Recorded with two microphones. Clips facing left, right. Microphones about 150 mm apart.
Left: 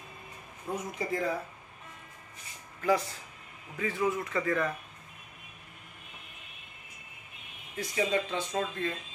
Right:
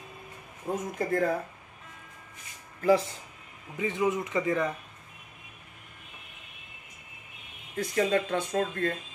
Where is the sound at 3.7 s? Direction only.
20° right (ahead or behind).